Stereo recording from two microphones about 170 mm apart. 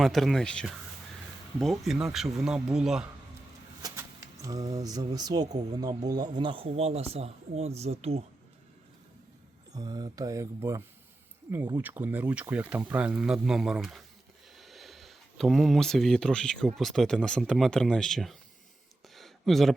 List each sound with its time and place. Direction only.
0.0 s speech: centre (ahead or behind)
3.8 s vehicle: 20° right (ahead or behind)
4.4 s speech: 20° right (ahead or behind); by 8.2 s 40° right (ahead or behind)
9.7 s speech: 25° right (ahead or behind); by 18.3 s centre (ahead or behind)
19.1 s a sound: centre (ahead or behind)